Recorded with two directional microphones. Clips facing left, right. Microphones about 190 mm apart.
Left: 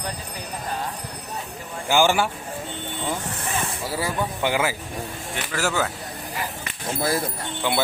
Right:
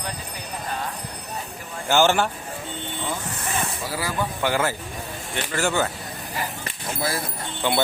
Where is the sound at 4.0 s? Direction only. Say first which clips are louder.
Left 1 dB; 20° left (ahead or behind).